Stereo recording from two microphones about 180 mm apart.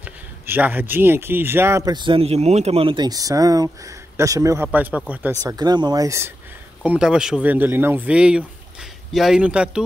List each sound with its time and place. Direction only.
0.0 s speech: 10° right (ahead or behind)
5.4 s speech: 20° right (ahead or behind)
6.8 s speech: 5° right (ahead or behind)